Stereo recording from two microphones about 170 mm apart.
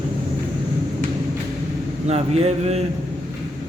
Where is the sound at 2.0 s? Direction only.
40° right (ahead or behind).